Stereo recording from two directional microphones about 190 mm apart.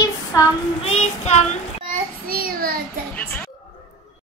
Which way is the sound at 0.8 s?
35° left (ahead or behind).